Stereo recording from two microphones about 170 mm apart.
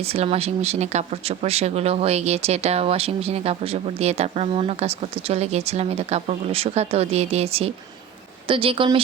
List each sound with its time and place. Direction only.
0.0 s speech: 35° right (ahead or behind)